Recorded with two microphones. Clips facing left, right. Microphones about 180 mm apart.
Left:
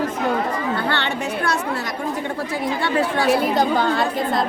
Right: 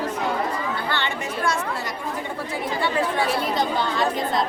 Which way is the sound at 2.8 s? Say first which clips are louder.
Left 3 dB; 75° left (ahead or behind).